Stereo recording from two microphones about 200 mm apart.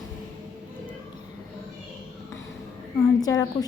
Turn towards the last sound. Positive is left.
turn(degrees=20)  # may be behind; listen again after turning